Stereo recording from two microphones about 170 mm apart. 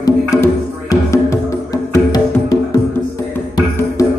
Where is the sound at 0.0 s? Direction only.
20° left (ahead or behind).